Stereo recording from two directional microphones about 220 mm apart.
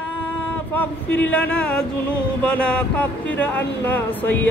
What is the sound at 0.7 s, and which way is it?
Speech, 5° left (ahead or behind).